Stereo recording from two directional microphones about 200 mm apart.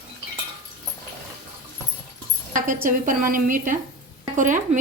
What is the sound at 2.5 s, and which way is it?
A woman's voice, 40° right (ahead or behind).